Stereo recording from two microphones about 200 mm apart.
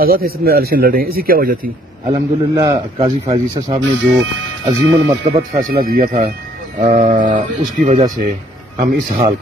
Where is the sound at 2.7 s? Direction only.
25° right (ahead or behind).